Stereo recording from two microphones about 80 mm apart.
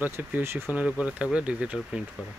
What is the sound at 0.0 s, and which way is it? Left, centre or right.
Speech, right.